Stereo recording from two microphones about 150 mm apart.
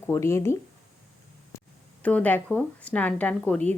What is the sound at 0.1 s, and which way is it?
Speech, 20° left (ahead or behind).